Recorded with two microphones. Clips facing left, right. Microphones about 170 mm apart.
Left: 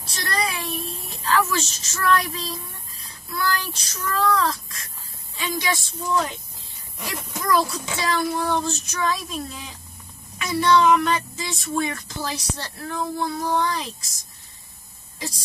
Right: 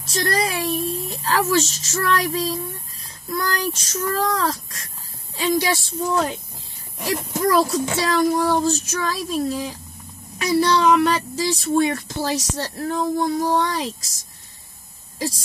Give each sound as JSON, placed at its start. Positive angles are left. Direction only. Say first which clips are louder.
{"t": 0.0, "sound": "speech", "louder": "right 5 dB", "side_deg": -45}
{"t": 7.0, "sound": "speech", "louder": "right 9 dB", "side_deg": -40}